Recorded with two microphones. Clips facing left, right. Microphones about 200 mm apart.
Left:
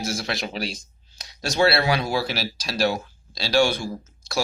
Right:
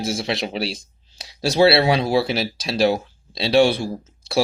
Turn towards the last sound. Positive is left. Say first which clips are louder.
# right 6 dB
turn(degrees=-30)  # may be behind; listen again after turning